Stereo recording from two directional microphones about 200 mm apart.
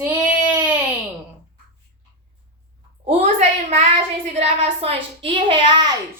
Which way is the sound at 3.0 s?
35° right (ahead or behind).